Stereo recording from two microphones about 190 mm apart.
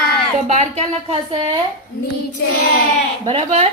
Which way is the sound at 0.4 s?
40° right (ahead or behind).